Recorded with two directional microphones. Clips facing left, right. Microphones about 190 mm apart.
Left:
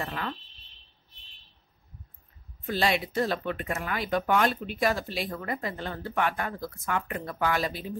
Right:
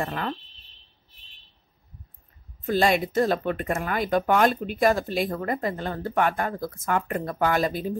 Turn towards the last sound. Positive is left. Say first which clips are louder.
# right 5 dB
turn(degrees=-45)  # may be behind; listen again after turning